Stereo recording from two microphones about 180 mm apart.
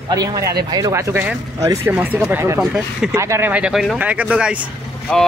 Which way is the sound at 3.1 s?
15° right (ahead or behind).